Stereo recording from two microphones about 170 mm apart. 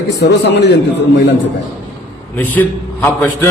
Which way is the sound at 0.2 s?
90° left.